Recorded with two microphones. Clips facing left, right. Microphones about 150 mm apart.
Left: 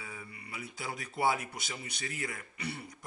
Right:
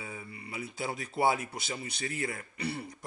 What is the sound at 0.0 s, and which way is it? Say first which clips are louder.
Speech: right 4 dB; 25° right (ahead or behind).